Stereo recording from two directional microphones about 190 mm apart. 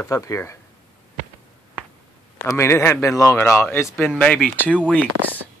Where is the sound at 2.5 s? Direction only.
15° left (ahead or behind).